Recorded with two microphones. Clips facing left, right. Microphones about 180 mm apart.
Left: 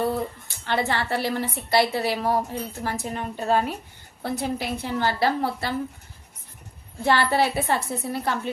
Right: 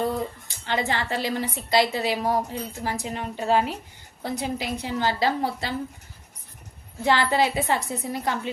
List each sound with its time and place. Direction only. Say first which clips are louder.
0.0 s a sound: left 1 dB; 15° right (ahead or behind)
0.7 s a woman's voice: left 1 dB; 15° right (ahead or behind)
7.0 s a woman's voice: even; 15° right (ahead or behind)